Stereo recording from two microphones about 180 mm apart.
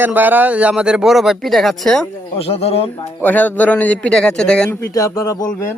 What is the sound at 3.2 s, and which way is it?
Speech, 10° left (ahead or behind).